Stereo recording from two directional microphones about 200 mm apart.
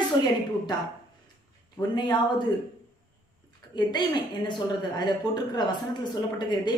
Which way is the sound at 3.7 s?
20° left (ahead or behind).